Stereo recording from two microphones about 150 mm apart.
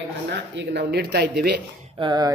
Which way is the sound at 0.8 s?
90° right.